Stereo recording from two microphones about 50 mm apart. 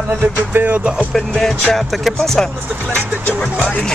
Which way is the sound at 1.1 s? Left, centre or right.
Centre.